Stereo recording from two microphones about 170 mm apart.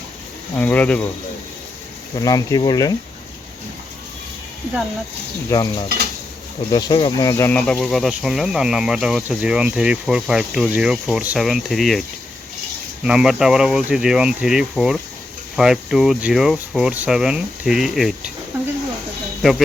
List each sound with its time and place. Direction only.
0.6 s speech: 10° left (ahead or behind)
2.1 s speech: 20° left (ahead or behind)
5.5 s speech: 20° left (ahead or behind); by 18.3 s centre (ahead or behind)
19.4 s speech: centre (ahead or behind)